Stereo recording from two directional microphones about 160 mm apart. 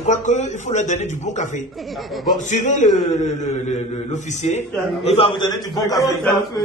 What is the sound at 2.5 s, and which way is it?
A man's voice, 50° left (ahead or behind).